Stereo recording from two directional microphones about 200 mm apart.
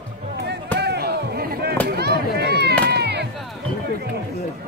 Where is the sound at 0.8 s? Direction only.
55° right (ahead or behind).